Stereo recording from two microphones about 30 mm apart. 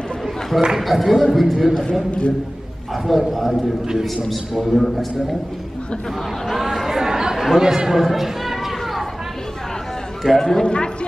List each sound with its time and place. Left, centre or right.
0.7 s a man's voice: centre
2.0 s speech: left
3.1 s a man's voice: centre
4.6 s a man's voice: centre
6.4 s chatter: centre
10.2 s speech: centre
10.6 s speech: left